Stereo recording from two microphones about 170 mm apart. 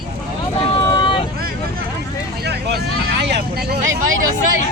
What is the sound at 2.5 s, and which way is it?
Vehicle, 75° right (ahead or behind).